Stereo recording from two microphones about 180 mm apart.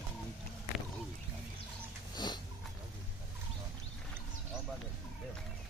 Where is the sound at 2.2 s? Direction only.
25° left (ahead or behind).